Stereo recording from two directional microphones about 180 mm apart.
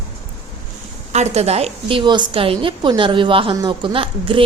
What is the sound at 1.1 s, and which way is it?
A woman's voice, 40° right (ahead or behind).